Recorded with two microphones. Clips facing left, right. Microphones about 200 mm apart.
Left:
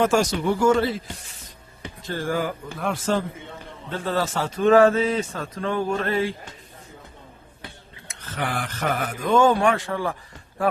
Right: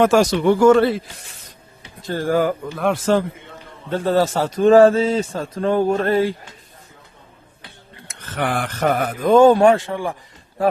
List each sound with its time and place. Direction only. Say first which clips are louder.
0.0 s speech: right 6 dB; 85° right; by 1.0 s 65° right (ahead or behind)
2.0 s a man's voice: right 7 dB; 40° right (ahead or behind)
2.8 s speech: right 6 dB; 70° right (ahead or behind)
3.9 s a man's voice: right 7 dB; 40° right (ahead or behind)
8.4 s speech: right 6 dB; 70° right (ahead or behind)
8.8 s a man's voice: right 7 dB; 40° right (ahead or behind); by 10.2 s 20° right (ahead or behind)